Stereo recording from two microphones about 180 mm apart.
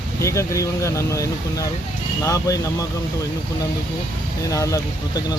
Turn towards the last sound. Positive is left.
turn(degrees=20)  # may be behind; listen again after turning